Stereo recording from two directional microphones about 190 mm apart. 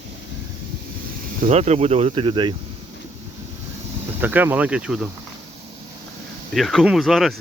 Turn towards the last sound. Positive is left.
turn(degrees=0)  # may be behind; listen again after turning